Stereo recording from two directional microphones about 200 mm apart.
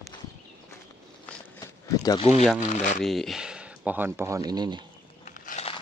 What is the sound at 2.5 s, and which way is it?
Speech, 35° left (ahead or behind).